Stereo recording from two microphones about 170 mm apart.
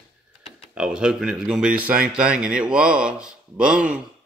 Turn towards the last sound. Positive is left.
turn(degrees=-5)  # may be behind; listen again after turning